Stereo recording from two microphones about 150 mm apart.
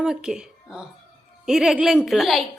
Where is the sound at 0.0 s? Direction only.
5° right (ahead or behind).